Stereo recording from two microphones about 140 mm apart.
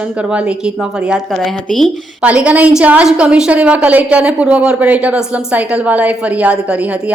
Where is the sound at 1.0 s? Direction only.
5° right (ahead or behind).